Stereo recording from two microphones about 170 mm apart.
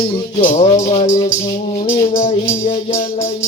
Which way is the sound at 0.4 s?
35° left (ahead or behind).